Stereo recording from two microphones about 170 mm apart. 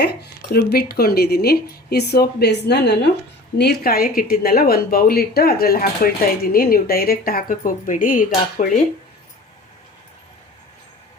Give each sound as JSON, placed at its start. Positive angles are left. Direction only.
{"t": 0.0, "sound": "speech", "side_deg": 75}
{"t": 3.6, "sound": "speech", "side_deg": 65}